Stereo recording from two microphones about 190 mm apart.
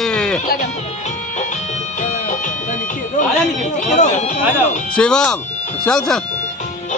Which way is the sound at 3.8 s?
40° left (ahead or behind).